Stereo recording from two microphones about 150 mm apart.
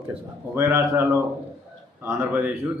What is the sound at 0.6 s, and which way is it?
Speech, 15° right (ahead or behind).